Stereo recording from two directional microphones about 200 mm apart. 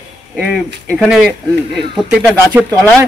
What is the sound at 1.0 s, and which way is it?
Speech, 5° right (ahead or behind).